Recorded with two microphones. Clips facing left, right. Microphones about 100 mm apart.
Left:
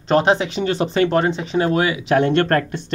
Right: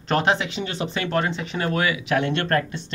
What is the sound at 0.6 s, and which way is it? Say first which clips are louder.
Speech: left 9 dB; 40° left (ahead or behind).